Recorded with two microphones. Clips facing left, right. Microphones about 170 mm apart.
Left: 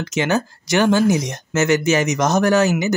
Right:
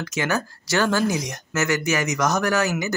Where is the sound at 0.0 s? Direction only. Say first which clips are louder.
Left 5 dB; 20° left (ahead or behind).